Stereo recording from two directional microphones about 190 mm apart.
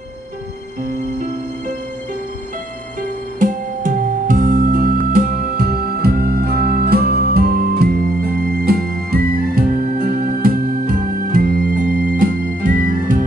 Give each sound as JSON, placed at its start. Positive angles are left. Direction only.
{"t": 3.0, "sound": "music", "side_deg": -45}